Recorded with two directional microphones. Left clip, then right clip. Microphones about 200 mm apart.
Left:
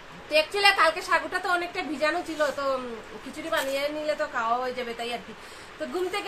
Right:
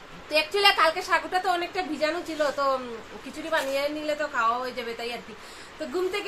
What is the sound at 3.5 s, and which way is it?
A woman's voice, 5° right (ahead or behind).